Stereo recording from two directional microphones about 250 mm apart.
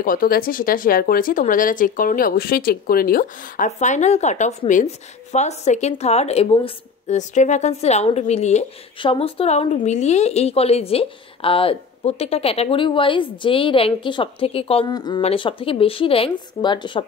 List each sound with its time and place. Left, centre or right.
0.0 s speech: left; by 17.0 s centre